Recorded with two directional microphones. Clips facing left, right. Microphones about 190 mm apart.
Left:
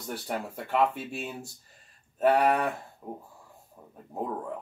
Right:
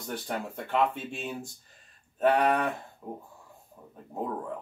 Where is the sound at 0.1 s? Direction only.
5° left (ahead or behind).